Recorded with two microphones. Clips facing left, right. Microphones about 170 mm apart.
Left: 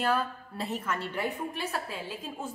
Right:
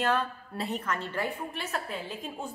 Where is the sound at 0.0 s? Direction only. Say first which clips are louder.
Even; 5° left (ahead or behind).